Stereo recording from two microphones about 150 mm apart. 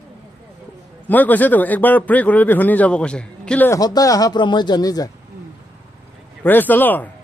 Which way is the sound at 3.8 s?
25° left (ahead or behind).